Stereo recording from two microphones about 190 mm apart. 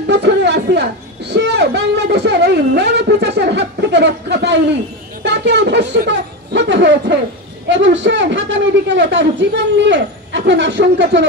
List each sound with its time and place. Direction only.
0.0 s a woman's voice: 65° right (ahead or behind)